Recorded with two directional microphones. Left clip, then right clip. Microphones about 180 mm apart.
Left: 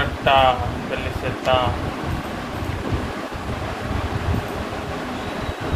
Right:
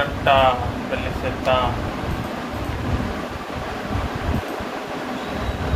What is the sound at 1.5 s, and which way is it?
Speech, 50° left (ahead or behind).